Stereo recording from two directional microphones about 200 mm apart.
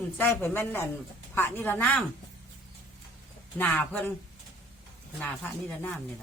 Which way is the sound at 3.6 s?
5° left (ahead or behind).